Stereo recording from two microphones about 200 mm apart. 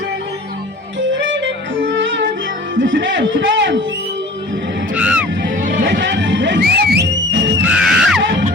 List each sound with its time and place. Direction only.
0.9 s music: 65° right (ahead or behind)
2.7 s a man's voice: 70° right (ahead or behind)
4.9 s music: 5° right (ahead or behind)
5.5 s music: 40° right (ahead or behind)
5.8 s music: 65° right (ahead or behind)
7.6 s music: 5° right (ahead or behind)
8.2 s music: 60° right (ahead or behind)